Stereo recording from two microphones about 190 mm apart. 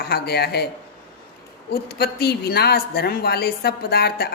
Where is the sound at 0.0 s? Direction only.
55° left (ahead or behind).